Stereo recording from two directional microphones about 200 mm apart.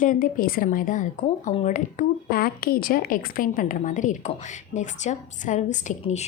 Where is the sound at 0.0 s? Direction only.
40° left (ahead or behind).